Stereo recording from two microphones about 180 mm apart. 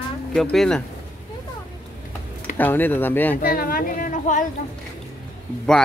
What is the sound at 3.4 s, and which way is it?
A woman's voice, 55° left (ahead or behind).